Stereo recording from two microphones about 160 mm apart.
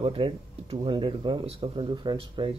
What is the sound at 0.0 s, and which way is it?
Speech, 35° right (ahead or behind).